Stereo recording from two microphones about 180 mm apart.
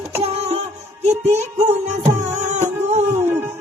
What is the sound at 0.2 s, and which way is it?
Music, 35° right (ahead or behind).